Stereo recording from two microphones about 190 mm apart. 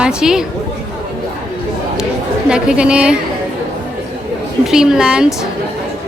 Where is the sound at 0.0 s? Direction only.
5° right (ahead or behind).